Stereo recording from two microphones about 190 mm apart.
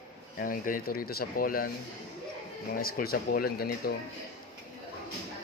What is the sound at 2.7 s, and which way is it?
Speech, 50° left (ahead or behind).